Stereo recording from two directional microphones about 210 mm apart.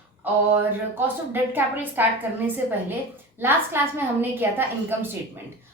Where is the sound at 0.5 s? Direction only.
10° right (ahead or behind).